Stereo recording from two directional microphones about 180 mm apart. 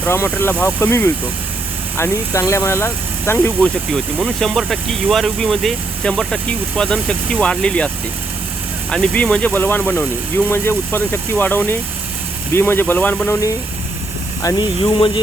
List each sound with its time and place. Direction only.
0.0 s speech: 10° left (ahead or behind)
8.9 s speech: 5° left (ahead or behind)
14.4 s speech: 25° left (ahead or behind)